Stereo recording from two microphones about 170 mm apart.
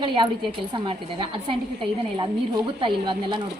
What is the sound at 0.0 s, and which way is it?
A woman's voice, 30° right (ahead or behind).